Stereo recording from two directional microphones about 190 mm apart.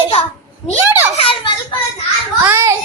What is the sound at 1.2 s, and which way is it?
Children playing, 30° left (ahead or behind).